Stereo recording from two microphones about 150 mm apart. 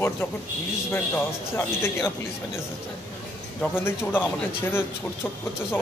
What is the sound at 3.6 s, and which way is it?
Speech, 15° left (ahead or behind).